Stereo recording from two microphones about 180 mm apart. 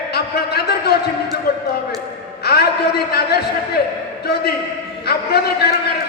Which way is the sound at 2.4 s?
65° left (ahead or behind).